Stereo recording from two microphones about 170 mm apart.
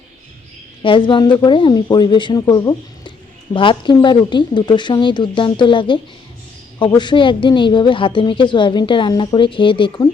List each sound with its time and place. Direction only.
0.8 s a woman's voice: 30° left (ahead or behind)